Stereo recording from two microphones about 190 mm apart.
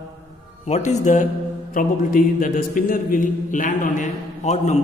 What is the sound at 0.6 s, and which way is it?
A man's voice, 35° left (ahead or behind).